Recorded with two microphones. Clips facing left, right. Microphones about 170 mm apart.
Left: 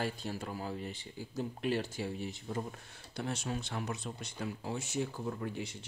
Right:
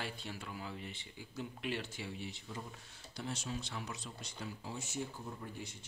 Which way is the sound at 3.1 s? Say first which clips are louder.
Left 5 dB; 60° left (ahead or behind).